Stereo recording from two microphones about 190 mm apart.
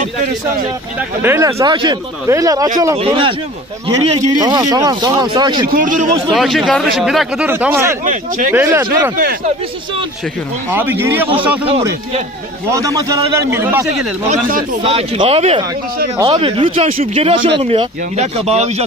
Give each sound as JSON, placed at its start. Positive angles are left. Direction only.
{"t": 0.9, "sound": "speech", "side_deg": -10}
{"t": 4.4, "sound": "speech", "side_deg": -20}
{"t": 5.7, "sound": "a man's voice", "side_deg": -45}
{"t": 6.3, "sound": "speech", "side_deg": 0}
{"t": 8.0, "sound": "speech", "side_deg": -40}
{"t": 8.5, "sound": "speech", "side_deg": -10}
{"t": 9.1, "sound": "a man's voice", "side_deg": -50}
{"t": 10.7, "sound": "speech", "side_deg": -10}
{"t": 12.7, "sound": "speech", "side_deg": -15}
{"t": 14.8, "sound": "speech", "side_deg": -30}